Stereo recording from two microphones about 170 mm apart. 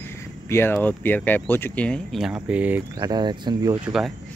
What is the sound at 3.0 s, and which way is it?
Speech, 25° right (ahead or behind).